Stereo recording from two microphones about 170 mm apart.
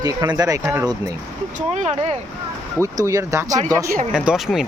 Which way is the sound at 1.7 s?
40° right (ahead or behind).